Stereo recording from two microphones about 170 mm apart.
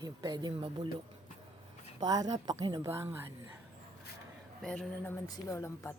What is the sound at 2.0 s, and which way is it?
Speech, 25° right (ahead or behind).